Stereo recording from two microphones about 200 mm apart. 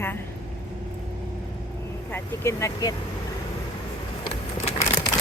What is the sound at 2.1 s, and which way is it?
Speech, 10° left (ahead or behind).